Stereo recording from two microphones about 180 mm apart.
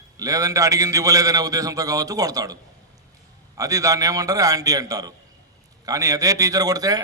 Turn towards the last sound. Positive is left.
turn(degrees=-20)  # may be behind; listen again after turning